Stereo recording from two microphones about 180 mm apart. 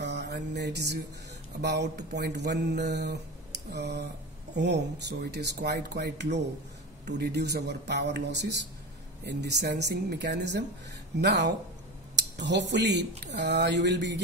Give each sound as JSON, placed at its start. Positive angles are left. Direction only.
{"t": 0.0, "sound": "mantra", "side_deg": -70}
{"t": 1.6, "sound": "speech", "side_deg": -70}